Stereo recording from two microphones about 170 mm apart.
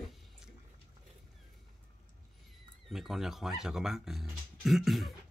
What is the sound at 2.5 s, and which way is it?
Music, centre (ahead or behind).